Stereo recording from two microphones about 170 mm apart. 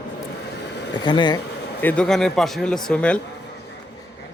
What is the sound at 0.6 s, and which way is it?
Vehicle, 80° left.